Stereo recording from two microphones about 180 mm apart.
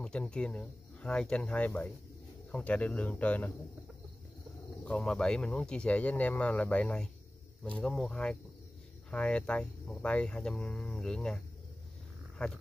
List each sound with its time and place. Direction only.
0.0 s speech: 5° left (ahead or behind)
4.8 s speech: 5° left (ahead or behind)